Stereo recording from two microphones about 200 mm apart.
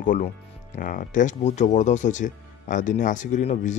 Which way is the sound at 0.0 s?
40° left (ahead or behind).